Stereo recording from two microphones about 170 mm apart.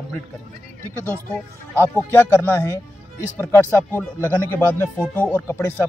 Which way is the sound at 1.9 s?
15° left (ahead or behind).